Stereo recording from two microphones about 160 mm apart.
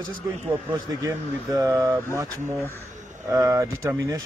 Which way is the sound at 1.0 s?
20° right (ahead or behind).